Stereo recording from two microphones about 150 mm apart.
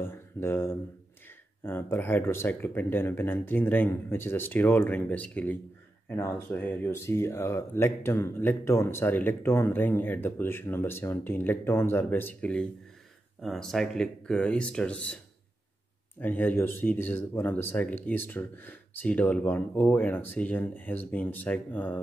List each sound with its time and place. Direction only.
0.0 s speech: 15° left (ahead or behind)
16.2 s speech: 10° left (ahead or behind)